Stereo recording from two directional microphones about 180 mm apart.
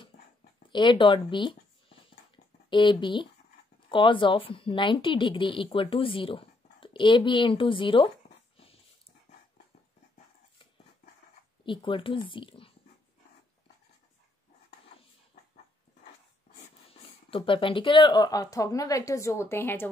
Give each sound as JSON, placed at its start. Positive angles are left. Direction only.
{"t": 0.7, "sound": "speech", "side_deg": 25}
{"t": 11.6, "sound": "speech", "side_deg": 30}
{"t": 17.0, "sound": "speech", "side_deg": 30}